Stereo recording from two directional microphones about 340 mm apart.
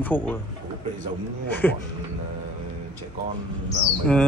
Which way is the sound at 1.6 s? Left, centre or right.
Centre.